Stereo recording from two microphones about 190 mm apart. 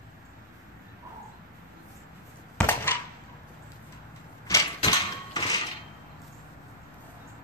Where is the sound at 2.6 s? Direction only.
10° left (ahead or behind).